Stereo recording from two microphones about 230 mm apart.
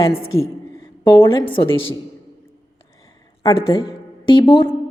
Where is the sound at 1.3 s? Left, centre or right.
Left.